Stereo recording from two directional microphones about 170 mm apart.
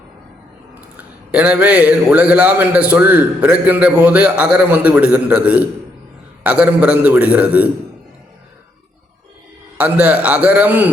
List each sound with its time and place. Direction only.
0.9 s a man's voice: 5° right (ahead or behind)
9.7 s a man's voice: 10° right (ahead or behind)